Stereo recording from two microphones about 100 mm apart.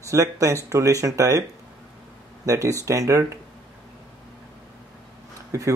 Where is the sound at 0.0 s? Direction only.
30° right (ahead or behind).